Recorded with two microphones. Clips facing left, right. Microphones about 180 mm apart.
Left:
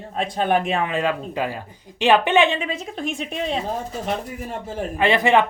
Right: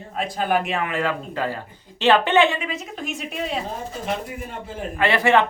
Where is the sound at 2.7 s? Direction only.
30° left (ahead or behind).